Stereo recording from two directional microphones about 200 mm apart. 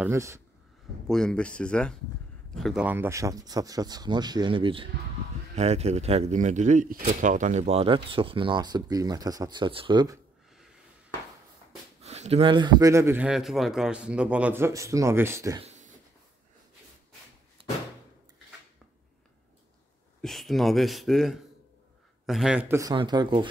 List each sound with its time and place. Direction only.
0.0 s a man's voice: 15° right (ahead or behind)
1.0 s a man's voice: 5° left (ahead or behind); by 10.2 s 20° right (ahead or behind)
12.0 s a man's voice: 30° right (ahead or behind); by 15.6 s 15° right (ahead or behind)
15.6 s a sound: 35° right (ahead or behind)
17.6 s door: 25° right (ahead or behind)
20.2 s a man's voice: centre (ahead or behind); by 23.5 s 25° right (ahead or behind)